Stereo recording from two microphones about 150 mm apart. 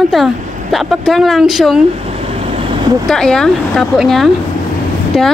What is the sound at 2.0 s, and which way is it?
Vehicle, 40° right (ahead or behind).